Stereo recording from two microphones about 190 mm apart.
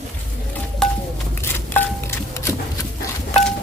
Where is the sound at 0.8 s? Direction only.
Centre (ahead or behind).